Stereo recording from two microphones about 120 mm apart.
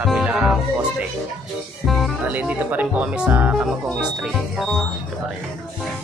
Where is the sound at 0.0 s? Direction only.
5° right (ahead or behind).